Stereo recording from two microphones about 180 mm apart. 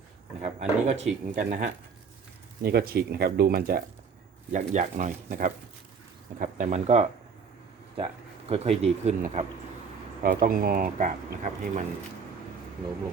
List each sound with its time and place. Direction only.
0.4 s speech: 40° right (ahead or behind); by 3.8 s 55° right (ahead or behind)
4.5 s speech: 45° right (ahead or behind)
10.2 s speech: 50° right (ahead or behind)